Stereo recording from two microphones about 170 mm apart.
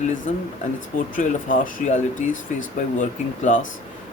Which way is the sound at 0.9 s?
50° left (ahead or behind).